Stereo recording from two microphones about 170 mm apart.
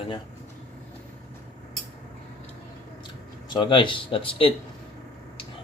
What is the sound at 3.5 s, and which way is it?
Speech, 30° left (ahead or behind).